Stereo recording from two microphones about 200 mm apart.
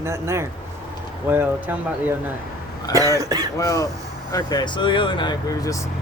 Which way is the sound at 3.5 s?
15° left (ahead or behind).